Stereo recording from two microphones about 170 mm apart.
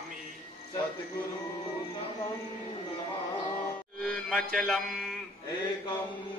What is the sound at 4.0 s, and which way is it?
Mantra, 5° left (ahead or behind).